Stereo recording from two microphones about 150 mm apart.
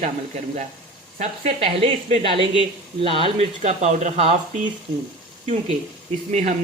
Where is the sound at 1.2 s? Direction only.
45° right (ahead or behind).